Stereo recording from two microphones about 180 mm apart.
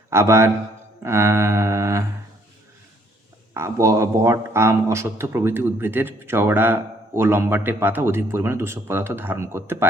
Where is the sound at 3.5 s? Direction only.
15° right (ahead or behind).